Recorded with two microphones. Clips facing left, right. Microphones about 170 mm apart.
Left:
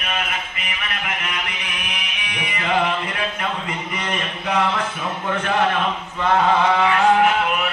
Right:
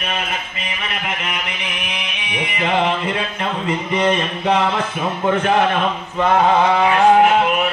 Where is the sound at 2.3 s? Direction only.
25° right (ahead or behind).